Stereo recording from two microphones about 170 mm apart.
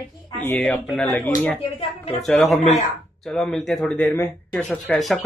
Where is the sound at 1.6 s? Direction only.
35° left (ahead or behind).